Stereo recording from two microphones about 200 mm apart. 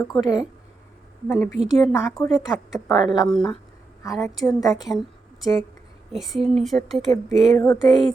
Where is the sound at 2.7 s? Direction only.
15° left (ahead or behind).